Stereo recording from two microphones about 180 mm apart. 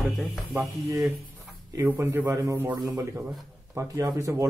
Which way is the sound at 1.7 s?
15° right (ahead or behind).